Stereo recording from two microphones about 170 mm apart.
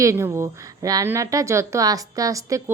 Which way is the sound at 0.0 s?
15° right (ahead or behind).